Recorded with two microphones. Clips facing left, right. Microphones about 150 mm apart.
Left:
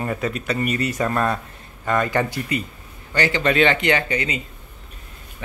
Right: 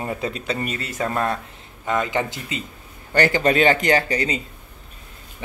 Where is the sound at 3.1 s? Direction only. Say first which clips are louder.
Right 2 dB; 45° right (ahead or behind).